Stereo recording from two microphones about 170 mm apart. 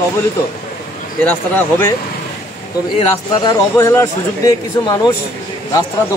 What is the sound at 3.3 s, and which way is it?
A man's voice, 20° left (ahead or behind).